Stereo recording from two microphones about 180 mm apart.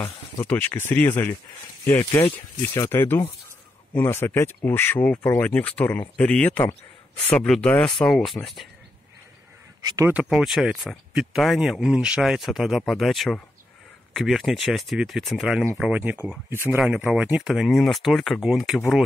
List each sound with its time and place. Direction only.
0.0 s speech: 10° left (ahead or behind)
9.8 s speech: 20° right (ahead or behind)
10.1 s speech: centre (ahead or behind)